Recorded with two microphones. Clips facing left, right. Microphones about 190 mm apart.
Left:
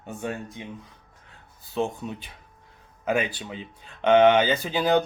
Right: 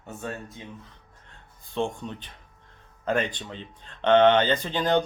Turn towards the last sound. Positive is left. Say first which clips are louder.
# left 2 dB
turn(degrees=10)  # may be behind; listen again after turning